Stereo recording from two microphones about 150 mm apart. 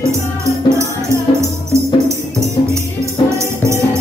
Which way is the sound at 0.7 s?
20° right (ahead or behind).